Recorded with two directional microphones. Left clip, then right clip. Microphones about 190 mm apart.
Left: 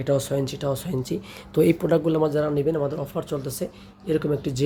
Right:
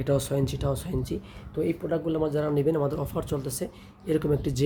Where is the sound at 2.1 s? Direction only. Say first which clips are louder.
Left 5 dB; 25° left (ahead or behind).